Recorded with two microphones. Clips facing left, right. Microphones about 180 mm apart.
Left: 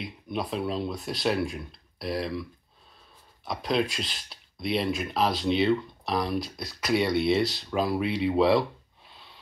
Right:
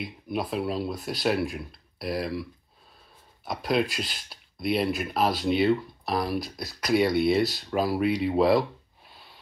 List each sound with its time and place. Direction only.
0.0 s speech: centre (ahead or behind)
3.4 s speech: centre (ahead or behind)